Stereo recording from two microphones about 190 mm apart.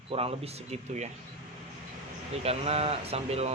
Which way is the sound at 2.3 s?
35° right (ahead or behind).